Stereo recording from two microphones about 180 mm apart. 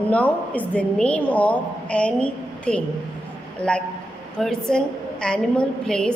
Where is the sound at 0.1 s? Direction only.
10° left (ahead or behind).